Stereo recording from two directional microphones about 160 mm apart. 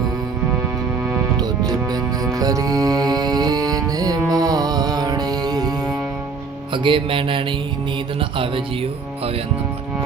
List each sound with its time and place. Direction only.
1.4 s music: 25° right (ahead or behind)